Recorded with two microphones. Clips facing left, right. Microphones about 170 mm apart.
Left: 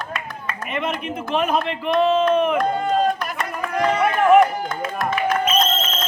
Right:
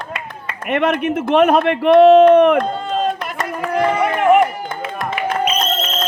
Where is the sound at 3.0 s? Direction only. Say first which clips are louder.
Right 1 dB; 25° right (ahead or behind).